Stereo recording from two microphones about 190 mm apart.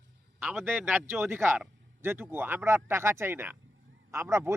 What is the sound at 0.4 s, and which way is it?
A man's voice, 10° right (ahead or behind).